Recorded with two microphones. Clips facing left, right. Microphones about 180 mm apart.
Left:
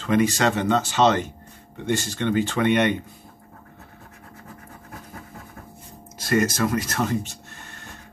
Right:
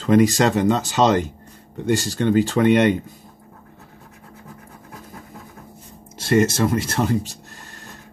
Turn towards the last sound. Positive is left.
turn(degrees=-35)  # may be behind; listen again after turning